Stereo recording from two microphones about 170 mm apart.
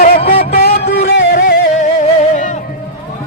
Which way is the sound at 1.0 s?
75° left (ahead or behind).